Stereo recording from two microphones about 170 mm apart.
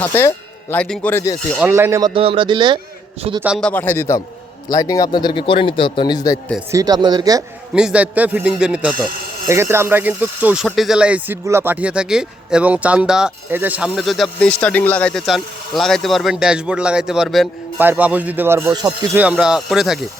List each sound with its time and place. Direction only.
0.0 s speech: 15° left (ahead or behind)
1.7 s a man's voice: 15° right (ahead or behind); by 3.4 s 35° right (ahead or behind)
3.6 s a man's voice: 10° left (ahead or behind)
6.7 s speech: 20° right (ahead or behind)
7.7 s speech: 5° right (ahead or behind)
17.7 s speech: 10° right (ahead or behind)